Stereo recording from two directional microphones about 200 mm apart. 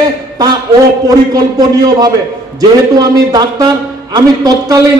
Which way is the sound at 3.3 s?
20° right (ahead or behind).